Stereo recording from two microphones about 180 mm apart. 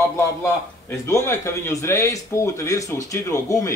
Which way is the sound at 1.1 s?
15° left (ahead or behind).